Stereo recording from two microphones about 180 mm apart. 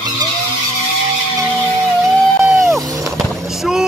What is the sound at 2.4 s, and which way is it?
Music, 15° right (ahead or behind).